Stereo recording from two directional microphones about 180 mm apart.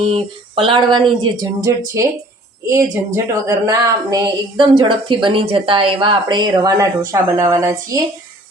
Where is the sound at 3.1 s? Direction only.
15° right (ahead or behind).